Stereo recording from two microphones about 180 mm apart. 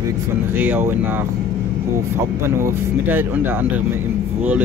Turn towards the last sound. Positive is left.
turn(degrees=-10)  # may be behind; listen again after turning